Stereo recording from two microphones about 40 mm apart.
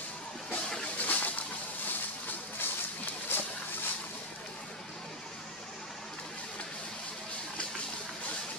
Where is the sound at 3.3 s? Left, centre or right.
Left.